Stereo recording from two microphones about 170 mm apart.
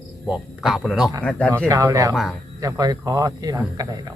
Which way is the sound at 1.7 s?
20° right (ahead or behind).